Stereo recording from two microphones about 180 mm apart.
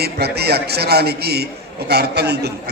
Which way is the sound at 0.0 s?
65° right (ahead or behind).